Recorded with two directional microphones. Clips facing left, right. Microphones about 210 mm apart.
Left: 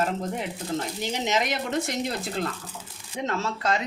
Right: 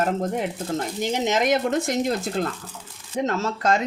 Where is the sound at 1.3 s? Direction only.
50° right (ahead or behind).